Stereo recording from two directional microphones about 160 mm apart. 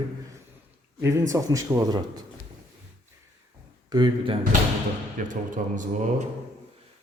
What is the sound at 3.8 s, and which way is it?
Speech, 25° right (ahead or behind).